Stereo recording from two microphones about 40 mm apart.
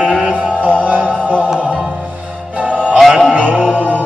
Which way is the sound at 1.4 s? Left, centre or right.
Right.